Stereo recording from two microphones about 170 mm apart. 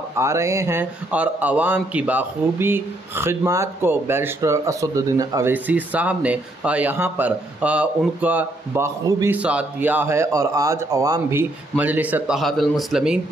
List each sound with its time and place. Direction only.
0.2 s speech: 15° right (ahead or behind)
5.5 s speech: 10° right (ahead or behind)